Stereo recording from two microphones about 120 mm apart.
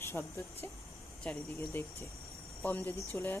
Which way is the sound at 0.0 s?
20° left (ahead or behind).